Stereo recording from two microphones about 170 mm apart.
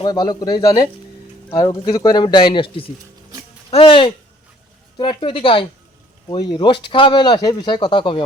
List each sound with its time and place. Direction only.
0.0 s speech: 25° left (ahead or behind)